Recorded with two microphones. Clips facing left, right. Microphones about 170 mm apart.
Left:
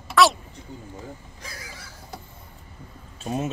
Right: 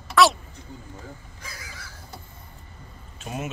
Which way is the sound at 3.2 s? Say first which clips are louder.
Left 5 dB; 30° left (ahead or behind).